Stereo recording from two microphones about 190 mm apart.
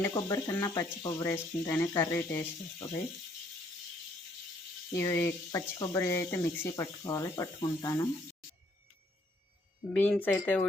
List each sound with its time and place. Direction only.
0.0 s speech: 20° left (ahead or behind)
4.9 s speech: 15° left (ahead or behind)
9.9 s speech: 5° left (ahead or behind)